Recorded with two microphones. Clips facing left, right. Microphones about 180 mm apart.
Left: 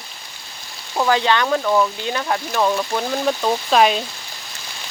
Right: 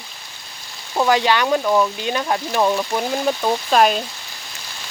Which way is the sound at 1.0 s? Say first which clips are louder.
Right 1 dB; 15° right (ahead or behind).